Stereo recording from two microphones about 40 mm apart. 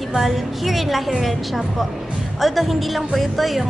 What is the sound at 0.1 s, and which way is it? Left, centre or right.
Speech, centre.